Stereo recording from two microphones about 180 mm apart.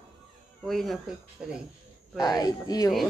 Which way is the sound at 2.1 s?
20° left (ahead or behind).